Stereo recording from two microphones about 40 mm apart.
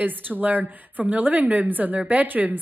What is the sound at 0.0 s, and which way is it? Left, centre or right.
A woman's voice, right.